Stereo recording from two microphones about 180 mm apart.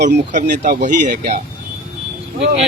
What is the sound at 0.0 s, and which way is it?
Speech, 40° right (ahead or behind).